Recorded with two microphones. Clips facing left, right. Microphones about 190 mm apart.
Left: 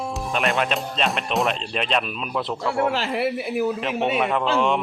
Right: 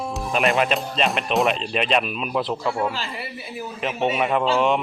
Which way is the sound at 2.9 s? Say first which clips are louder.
Left 9 dB; 75° left (ahead or behind).